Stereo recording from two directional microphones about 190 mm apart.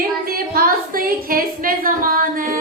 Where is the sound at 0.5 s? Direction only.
50° right (ahead or behind).